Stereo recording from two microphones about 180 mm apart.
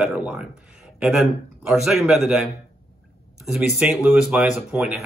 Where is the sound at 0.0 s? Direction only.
5° right (ahead or behind).